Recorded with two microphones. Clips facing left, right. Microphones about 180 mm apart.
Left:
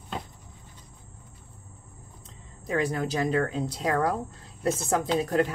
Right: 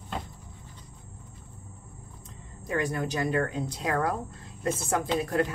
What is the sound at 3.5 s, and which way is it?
Speech, 30° left (ahead or behind).